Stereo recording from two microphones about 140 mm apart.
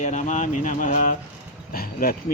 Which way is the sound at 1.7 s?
90° left.